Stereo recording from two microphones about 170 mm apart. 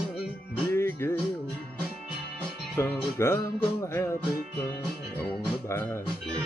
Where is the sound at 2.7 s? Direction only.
10° left (ahead or behind).